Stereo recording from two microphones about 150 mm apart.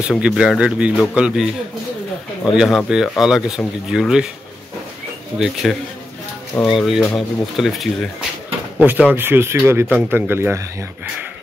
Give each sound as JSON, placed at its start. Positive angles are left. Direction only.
{"t": 0.2, "sound": "speech", "side_deg": -5}
{"t": 2.5, "sound": "speech", "side_deg": -5}
{"t": 5.4, "sound": "speech", "side_deg": 0}